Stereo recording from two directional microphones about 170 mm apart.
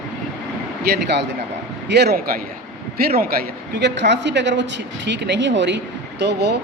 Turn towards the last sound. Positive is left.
turn(degrees=-80)